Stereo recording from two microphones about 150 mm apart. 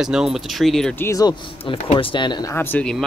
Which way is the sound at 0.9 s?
20° left (ahead or behind).